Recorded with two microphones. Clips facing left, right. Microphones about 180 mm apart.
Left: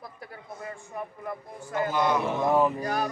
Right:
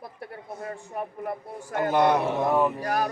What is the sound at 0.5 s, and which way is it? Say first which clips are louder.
Speech: right 3 dB; 40° right (ahead or behind).